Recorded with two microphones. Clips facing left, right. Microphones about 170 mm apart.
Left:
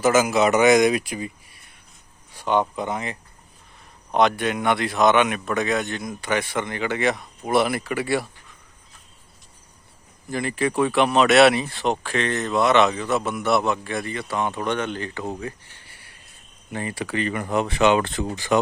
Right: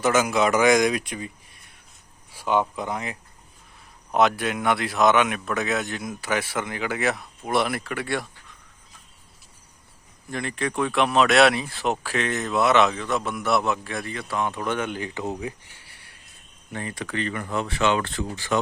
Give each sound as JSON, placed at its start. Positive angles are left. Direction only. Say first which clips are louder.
{"t": 0.0, "sound": "speech", "louder": "left 3 dB", "side_deg": 5}
{"t": 2.3, "sound": "speech", "louder": "left 1 dB", "side_deg": -5}
{"t": 10.2, "sound": "speech", "louder": "left 4 dB", "side_deg": 5}
{"t": 15.9, "sound": "a sound", "louder": "left 2 dB", "side_deg": 0}
{"t": 16.7, "sound": "speech", "louder": "left 3 dB", "side_deg": 5}